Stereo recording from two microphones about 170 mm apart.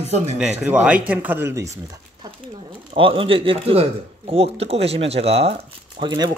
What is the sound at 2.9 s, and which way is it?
Speech, 30° right (ahead or behind).